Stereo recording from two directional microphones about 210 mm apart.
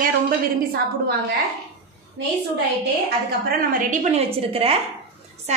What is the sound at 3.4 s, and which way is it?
A woman's voice, 40° right (ahead or behind).